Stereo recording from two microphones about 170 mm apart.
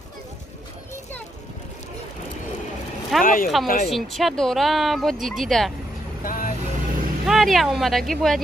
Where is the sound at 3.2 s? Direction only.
55° left (ahead or behind).